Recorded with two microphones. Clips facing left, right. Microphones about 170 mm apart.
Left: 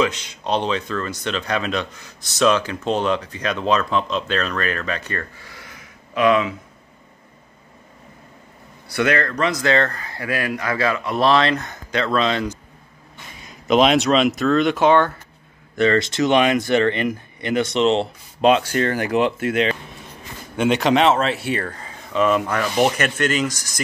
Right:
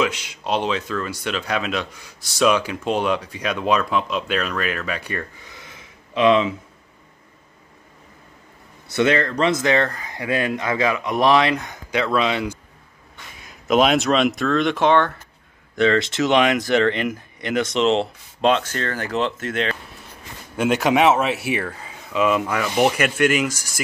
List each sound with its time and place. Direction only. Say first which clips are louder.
0.0 s speech: left 1 dB; 10° right (ahead or behind); by 6.5 s 25° right (ahead or behind)
8.8 s a man's voice: right 1 dB; 25° right (ahead or behind); by 19.8 s 10° left (ahead or behind)
20.5 s speech: left 1 dB; 5° right (ahead or behind)